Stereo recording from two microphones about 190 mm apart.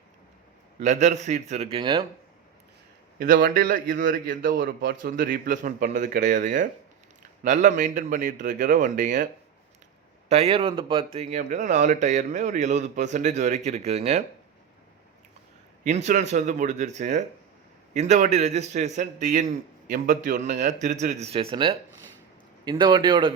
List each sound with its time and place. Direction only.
0.8 s a man's voice: 40° right (ahead or behind)
3.2 s a man's voice: 45° right (ahead or behind)
15.8 s a man's voice: 40° right (ahead or behind)